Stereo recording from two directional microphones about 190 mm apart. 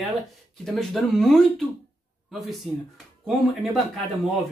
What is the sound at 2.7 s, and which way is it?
Speech, centre (ahead or behind).